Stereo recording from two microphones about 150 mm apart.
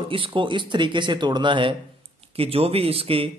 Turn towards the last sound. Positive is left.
turn(degrees=-40)  # may be behind; listen again after turning